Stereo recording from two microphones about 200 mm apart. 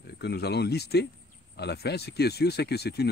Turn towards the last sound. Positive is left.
turn(degrees=55)  # may be behind; listen again after turning